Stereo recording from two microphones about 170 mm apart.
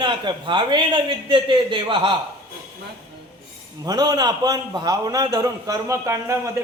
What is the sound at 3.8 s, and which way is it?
A man's voice, 25° right (ahead or behind).